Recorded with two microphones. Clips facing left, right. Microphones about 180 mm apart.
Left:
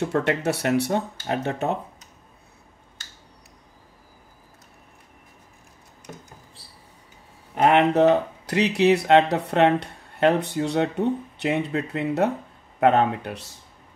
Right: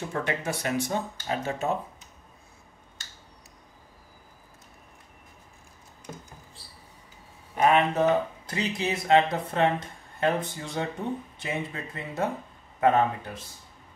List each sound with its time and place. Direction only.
0.0 s speech: 70° left (ahead or behind)
7.5 s speech: 70° left (ahead or behind)